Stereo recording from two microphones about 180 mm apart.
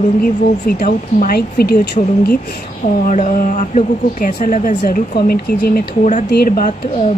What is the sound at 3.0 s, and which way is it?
Speech, 45° left (ahead or behind).